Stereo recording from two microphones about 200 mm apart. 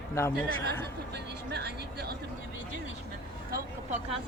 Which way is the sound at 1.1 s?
55° right (ahead or behind).